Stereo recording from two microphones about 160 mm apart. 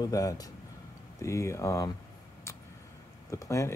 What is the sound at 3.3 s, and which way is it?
Speech, 20° left (ahead or behind).